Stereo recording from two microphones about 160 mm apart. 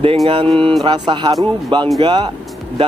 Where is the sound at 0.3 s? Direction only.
35° right (ahead or behind).